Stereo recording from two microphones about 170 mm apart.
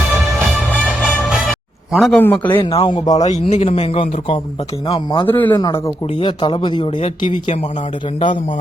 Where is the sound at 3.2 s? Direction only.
40° left (ahead or behind).